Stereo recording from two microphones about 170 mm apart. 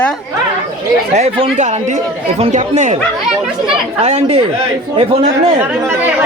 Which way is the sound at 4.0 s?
40° right (ahead or behind).